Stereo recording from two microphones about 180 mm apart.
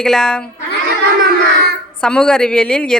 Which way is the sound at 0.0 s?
5° left (ahead or behind).